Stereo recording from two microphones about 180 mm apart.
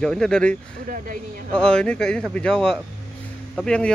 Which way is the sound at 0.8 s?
50° right (ahead or behind).